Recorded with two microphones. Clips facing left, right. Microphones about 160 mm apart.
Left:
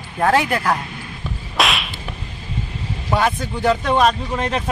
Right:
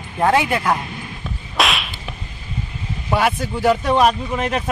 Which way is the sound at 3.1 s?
10° right (ahead or behind).